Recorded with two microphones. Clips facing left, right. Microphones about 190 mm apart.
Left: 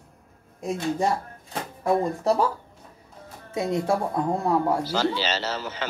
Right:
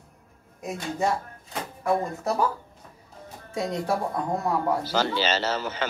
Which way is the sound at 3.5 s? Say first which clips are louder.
Left 3 dB; 25° left (ahead or behind).